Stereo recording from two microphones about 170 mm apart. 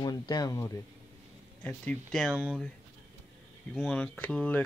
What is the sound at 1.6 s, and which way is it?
Speech, 5° left (ahead or behind).